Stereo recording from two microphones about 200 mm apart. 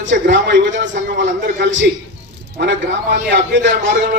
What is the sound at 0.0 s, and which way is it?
A man's voice, 65° right (ahead or behind).